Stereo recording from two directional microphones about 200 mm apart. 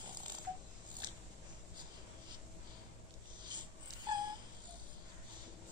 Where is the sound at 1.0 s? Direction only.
20° right (ahead or behind).